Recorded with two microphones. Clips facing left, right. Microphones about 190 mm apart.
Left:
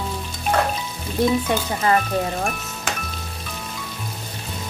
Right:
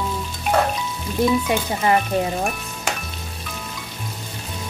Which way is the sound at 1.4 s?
20° right (ahead or behind).